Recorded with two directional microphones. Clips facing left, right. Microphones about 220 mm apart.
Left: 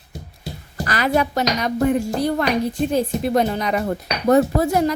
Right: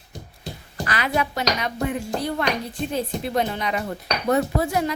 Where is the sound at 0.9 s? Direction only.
40° left (ahead or behind).